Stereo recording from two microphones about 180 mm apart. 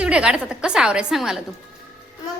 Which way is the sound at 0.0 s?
5° right (ahead or behind).